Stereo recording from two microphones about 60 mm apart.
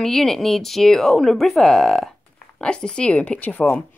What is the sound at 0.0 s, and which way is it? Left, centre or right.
Speech, centre.